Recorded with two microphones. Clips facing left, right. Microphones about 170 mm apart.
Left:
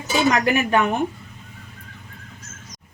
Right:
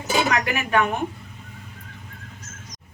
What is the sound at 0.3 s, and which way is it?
Speech, 30° left (ahead or behind).